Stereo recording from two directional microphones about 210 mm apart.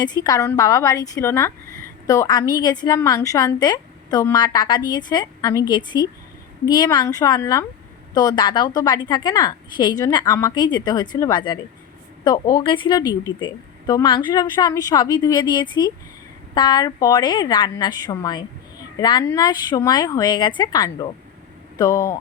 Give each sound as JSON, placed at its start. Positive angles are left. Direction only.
{"t": 0.0, "sound": "a woman's voice", "side_deg": 20}